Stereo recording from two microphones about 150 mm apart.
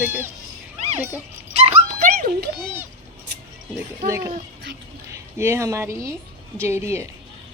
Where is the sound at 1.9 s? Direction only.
70° right (ahead or behind).